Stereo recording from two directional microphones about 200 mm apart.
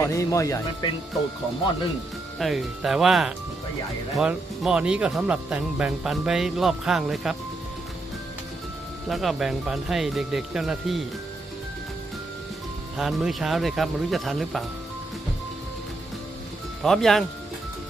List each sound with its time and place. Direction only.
0.0 s speech: 15° left (ahead or behind)
2.4 s speech: centre (ahead or behind)
9.0 s speech: centre (ahead or behind)
13.0 s speech: centre (ahead or behind)
16.8 s speech: centre (ahead or behind)